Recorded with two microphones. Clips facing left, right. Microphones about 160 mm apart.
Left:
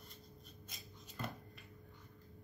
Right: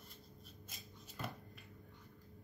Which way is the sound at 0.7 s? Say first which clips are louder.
Even; 5° right (ahead or behind).